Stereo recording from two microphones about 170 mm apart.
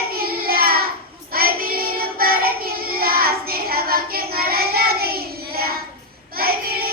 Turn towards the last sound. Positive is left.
turn(degrees=-60)  # may be behind; listen again after turning